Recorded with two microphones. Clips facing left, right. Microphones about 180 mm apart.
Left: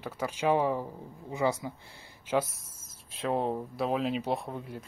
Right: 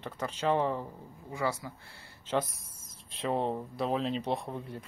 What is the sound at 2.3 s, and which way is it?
Speech, 5° left (ahead or behind).